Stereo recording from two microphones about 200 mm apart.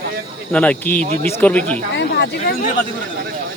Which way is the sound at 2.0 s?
55° left (ahead or behind).